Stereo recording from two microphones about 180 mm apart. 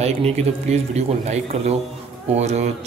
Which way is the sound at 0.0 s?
35° right (ahead or behind).